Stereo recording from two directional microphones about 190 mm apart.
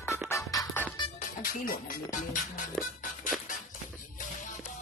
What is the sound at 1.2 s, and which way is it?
Music, 50° left (ahead or behind).